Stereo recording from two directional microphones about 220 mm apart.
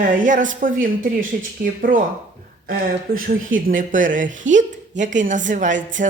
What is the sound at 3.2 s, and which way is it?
Speech, 40° right (ahead or behind).